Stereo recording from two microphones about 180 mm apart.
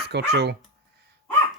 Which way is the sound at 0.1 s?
70° right (ahead or behind).